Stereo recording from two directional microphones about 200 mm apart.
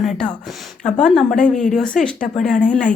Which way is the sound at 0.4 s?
5° left (ahead or behind).